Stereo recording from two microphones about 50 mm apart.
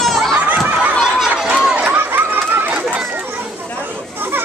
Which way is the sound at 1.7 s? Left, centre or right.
Right.